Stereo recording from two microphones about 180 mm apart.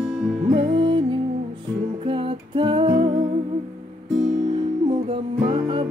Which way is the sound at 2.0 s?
30° right (ahead or behind).